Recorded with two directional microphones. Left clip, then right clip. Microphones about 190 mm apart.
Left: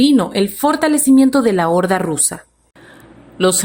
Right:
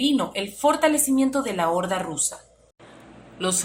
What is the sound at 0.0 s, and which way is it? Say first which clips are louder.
Speech: left 10 dB; 40° left (ahead or behind).